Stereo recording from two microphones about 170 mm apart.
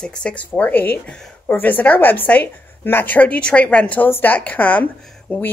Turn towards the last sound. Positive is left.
turn(degrees=5)  # may be behind; listen again after turning